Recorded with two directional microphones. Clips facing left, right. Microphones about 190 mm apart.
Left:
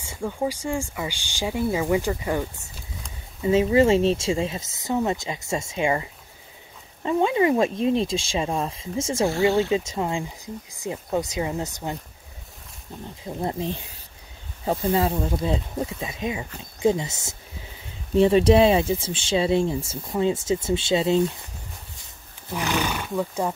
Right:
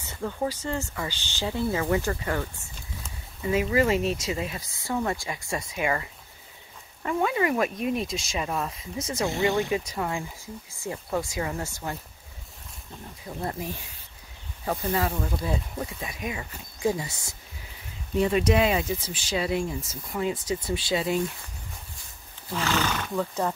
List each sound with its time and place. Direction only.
0.0 s speech: 10° left (ahead or behind)
3.4 s speech: 25° left (ahead or behind)
13.2 s speech: 20° left (ahead or behind)
22.5 s speech: 15° left (ahead or behind)